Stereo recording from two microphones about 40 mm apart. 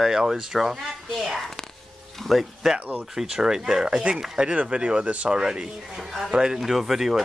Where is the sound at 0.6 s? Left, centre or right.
Centre.